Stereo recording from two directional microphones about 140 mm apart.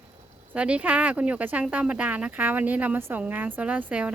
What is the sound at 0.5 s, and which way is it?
Speech, 10° right (ahead or behind).